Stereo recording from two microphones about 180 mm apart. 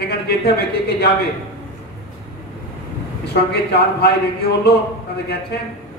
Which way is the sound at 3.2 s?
65° left (ahead or behind).